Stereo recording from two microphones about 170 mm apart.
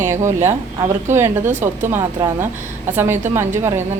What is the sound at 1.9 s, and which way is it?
Speech, 15° right (ahead or behind).